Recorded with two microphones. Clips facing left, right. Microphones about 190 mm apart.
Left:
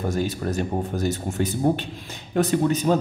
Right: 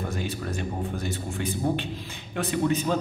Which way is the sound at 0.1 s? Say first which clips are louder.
Left 6 dB; 40° left (ahead or behind).